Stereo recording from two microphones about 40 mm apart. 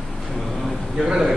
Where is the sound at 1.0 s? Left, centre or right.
Centre.